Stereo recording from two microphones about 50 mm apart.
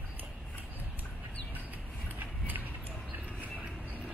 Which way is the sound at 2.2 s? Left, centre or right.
Right.